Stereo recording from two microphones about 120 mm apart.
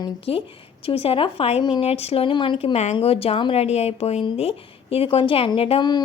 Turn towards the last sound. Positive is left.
turn(degrees=35)  # may be behind; listen again after turning